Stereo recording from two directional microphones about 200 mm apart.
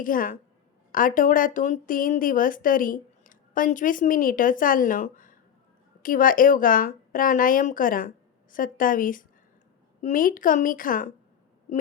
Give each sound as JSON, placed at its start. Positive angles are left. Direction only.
{"t": 0.0, "sound": "a woman's voice", "side_deg": 45}